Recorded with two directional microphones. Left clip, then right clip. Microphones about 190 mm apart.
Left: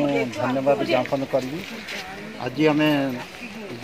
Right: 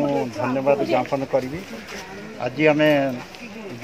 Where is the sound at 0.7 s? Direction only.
10° right (ahead or behind).